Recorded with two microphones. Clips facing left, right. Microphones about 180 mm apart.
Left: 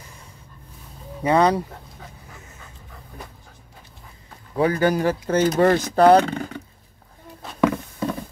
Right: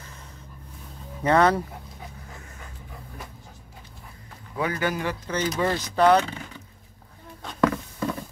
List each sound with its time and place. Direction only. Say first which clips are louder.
1.2 s speech: left 2 dB; 15° left (ahead or behind)
4.6 s speech: left 7 dB; 35° left (ahead or behind)
5.3 s speech: left 8 dB; 50° left (ahead or behind)
5.9 s speech: left 4 dB; 45° left (ahead or behind)
7.4 s a sound: left 2 dB; 10° left (ahead or behind)